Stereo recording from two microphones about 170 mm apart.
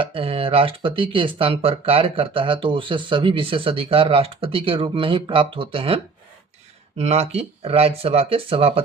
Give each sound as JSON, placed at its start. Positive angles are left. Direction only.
{"t": 0.0, "sound": "speech", "side_deg": -30}